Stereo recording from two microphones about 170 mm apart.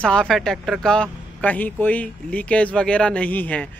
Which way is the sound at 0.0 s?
5° left (ahead or behind).